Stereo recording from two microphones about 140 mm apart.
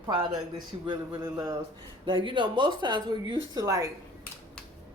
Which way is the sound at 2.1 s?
35° right (ahead or behind).